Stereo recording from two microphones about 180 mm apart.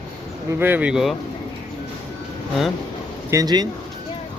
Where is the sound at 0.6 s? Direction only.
10° right (ahead or behind).